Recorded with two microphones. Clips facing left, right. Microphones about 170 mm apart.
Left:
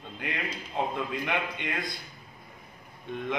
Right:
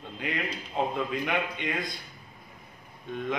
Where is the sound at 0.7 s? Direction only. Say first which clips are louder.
Right 2 dB; 5° right (ahead or behind).